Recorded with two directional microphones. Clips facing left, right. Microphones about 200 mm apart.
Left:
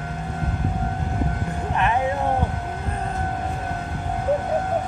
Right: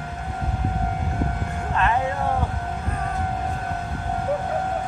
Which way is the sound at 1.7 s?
20° left (ahead or behind).